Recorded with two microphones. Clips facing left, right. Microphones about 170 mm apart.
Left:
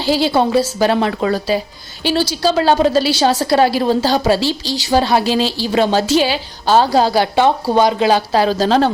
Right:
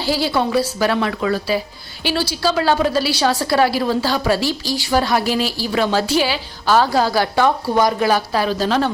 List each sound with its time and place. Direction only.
0.0 s a woman's voice: 20° left (ahead or behind)